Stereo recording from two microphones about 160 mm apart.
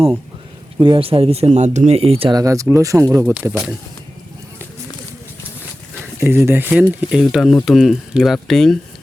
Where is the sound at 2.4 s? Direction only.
20° right (ahead or behind).